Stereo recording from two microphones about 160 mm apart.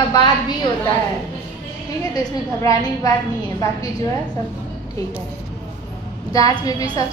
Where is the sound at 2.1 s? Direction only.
20° left (ahead or behind).